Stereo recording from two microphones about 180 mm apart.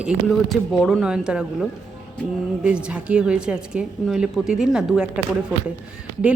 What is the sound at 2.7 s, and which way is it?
A woman's voice, 5° right (ahead or behind).